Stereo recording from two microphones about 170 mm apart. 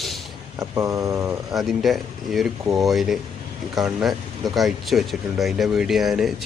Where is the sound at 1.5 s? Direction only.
Centre (ahead or behind).